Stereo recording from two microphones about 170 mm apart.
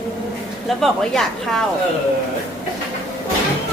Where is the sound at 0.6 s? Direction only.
Centre (ahead or behind).